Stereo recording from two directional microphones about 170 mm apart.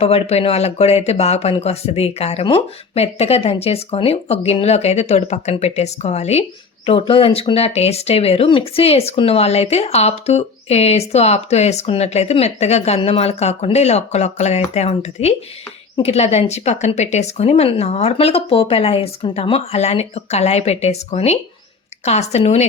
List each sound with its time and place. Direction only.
0.0 s speech: 35° left (ahead or behind)